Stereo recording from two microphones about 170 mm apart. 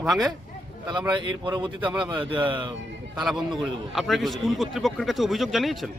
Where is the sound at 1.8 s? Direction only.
5° right (ahead or behind).